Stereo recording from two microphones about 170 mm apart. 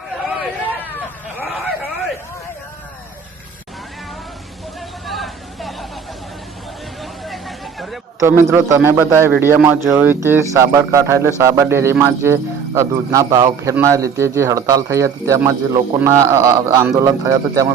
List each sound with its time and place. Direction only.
5.0 s vehicle: centre (ahead or behind)
7.0 s hubbub: centre (ahead or behind)
8.2 s a man's voice: 15° right (ahead or behind)